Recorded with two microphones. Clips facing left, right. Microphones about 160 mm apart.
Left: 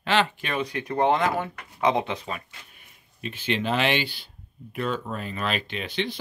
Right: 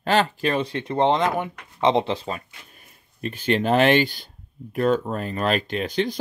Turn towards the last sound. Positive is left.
turn(degrees=-40)  # may be behind; listen again after turning